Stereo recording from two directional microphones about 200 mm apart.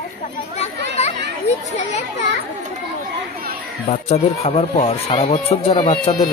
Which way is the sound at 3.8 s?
30° left (ahead or behind).